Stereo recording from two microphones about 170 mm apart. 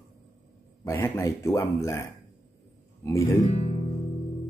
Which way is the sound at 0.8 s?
15° left (ahead or behind).